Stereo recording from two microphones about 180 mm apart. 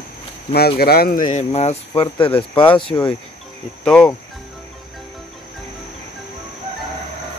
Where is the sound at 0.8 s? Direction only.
60° left (ahead or behind); by 3.2 s 25° left (ahead or behind).